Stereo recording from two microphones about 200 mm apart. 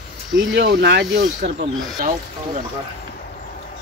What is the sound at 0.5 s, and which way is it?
Speech, 55° right (ahead or behind).